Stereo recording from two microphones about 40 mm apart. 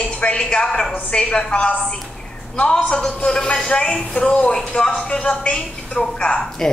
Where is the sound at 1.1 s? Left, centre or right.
Left.